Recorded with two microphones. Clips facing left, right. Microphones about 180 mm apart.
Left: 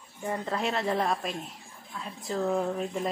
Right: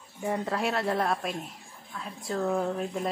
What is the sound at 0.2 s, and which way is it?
Speech, 5° right (ahead or behind).